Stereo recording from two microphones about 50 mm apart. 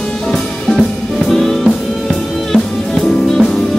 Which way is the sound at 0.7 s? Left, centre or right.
Centre.